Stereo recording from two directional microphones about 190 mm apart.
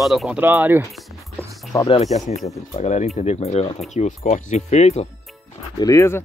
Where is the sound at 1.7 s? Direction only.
25° left (ahead or behind).